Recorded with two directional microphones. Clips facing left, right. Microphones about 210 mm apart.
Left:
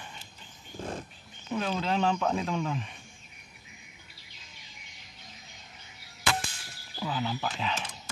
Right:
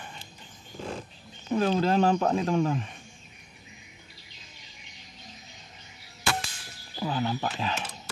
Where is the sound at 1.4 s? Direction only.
40° right (ahead or behind).